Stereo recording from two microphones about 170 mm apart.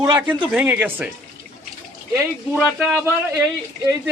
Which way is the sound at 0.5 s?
10° right (ahead or behind).